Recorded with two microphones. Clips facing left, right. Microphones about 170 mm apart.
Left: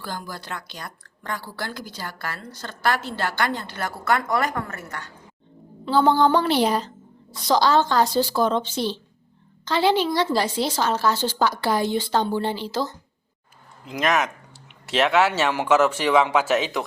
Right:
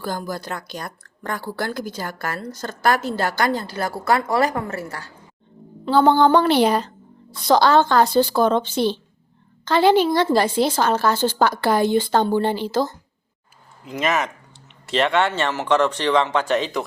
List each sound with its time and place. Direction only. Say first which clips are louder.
0.0 s speech: right 6 dB; 45° right (ahead or behind)
5.8 s a woman's voice: right 3 dB; 60° right (ahead or behind)
13.8 s speech: even; centre (ahead or behind)